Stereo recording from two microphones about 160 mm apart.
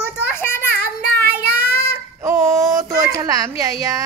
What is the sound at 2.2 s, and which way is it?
Speech, 20° right (ahead or behind).